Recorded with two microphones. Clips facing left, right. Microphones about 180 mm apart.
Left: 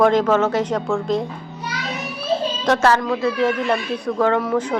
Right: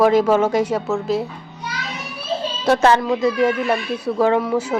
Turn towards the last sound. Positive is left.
turn(degrees=-5)  # may be behind; listen again after turning